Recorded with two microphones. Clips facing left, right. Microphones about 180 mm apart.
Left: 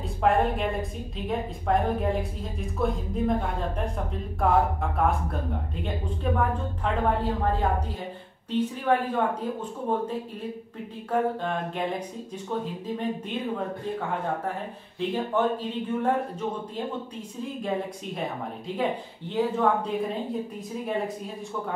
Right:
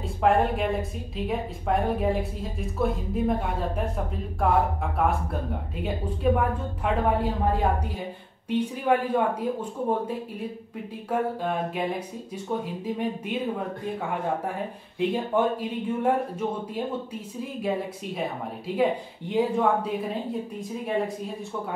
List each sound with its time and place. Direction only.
0.2 s a woman's voice: centre (ahead or behind)
6.3 s speech: 10° right (ahead or behind)
15.0 s speech: 10° right (ahead or behind)
18.8 s speech: 10° right (ahead or behind)